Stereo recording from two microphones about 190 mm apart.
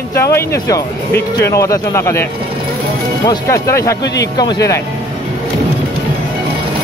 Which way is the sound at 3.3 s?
15° left (ahead or behind).